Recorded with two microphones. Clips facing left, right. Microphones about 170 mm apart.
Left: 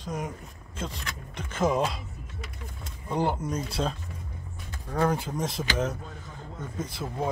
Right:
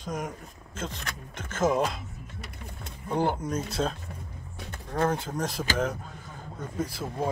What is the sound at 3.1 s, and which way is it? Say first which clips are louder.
Speech: right 1 dB; centre (ahead or behind).